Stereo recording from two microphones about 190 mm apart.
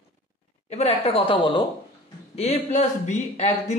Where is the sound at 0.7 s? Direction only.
35° left (ahead or behind).